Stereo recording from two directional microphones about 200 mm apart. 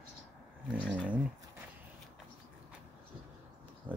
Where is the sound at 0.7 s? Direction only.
5° right (ahead or behind).